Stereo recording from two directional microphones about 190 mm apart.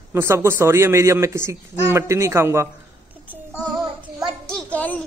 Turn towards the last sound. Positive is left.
turn(degrees=5)  # may be behind; listen again after turning